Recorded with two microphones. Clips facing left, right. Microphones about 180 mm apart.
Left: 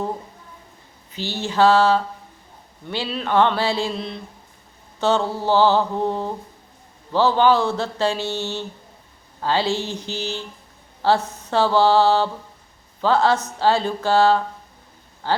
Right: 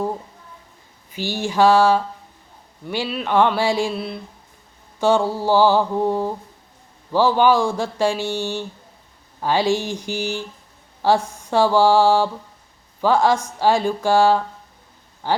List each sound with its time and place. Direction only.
1.1 s speech: 15° right (ahead or behind)